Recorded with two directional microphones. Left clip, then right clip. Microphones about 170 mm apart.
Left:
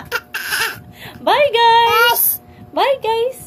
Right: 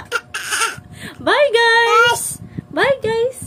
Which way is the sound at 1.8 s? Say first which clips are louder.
Even; 20° right (ahead or behind).